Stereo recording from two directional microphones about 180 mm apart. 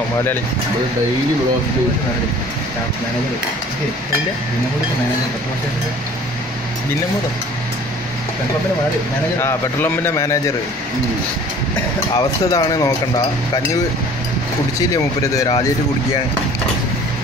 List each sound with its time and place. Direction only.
9.4 s a man's voice: 15° left (ahead or behind)
12.2 s speech: 20° left (ahead or behind)
14.8 s speech: 20° left (ahead or behind)